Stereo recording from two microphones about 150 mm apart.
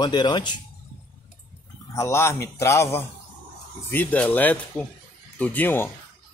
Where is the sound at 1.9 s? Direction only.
20° left (ahead or behind).